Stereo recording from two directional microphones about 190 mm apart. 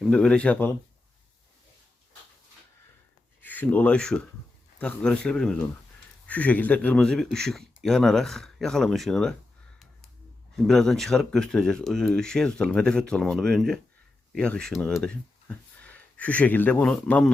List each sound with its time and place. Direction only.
0.0 s speech: 5° left (ahead or behind)
3.4 s speech: 10° left (ahead or behind)
10.6 s speech: centre (ahead or behind)